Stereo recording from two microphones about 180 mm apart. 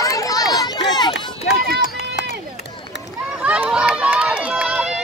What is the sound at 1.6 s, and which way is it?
Run, 65° right (ahead or behind).